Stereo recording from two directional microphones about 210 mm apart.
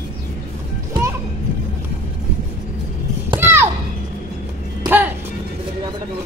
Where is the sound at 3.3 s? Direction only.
10° right (ahead or behind).